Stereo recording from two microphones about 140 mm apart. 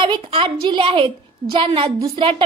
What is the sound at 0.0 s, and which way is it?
A woman's voice, 40° right (ahead or behind).